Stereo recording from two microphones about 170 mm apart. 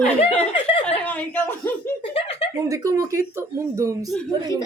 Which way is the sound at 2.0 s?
35° left (ahead or behind).